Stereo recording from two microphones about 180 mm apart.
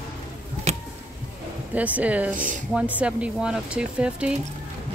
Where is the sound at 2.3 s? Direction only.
45° right (ahead or behind).